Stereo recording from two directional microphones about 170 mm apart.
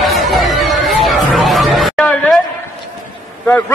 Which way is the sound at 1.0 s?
Centre (ahead or behind).